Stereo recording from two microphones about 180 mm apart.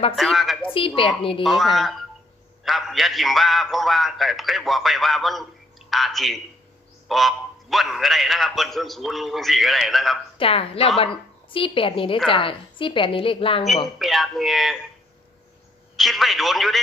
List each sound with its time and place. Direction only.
0.1 s a man's voice: centre (ahead or behind)
0.7 s a woman's voice: 30° left (ahead or behind)
1.4 s a man's voice: centre (ahead or behind)
10.3 s a woman's voice: 30° left (ahead or behind)
13.9 s a man's voice: centre (ahead or behind)
16.0 s a man's voice: centre (ahead or behind)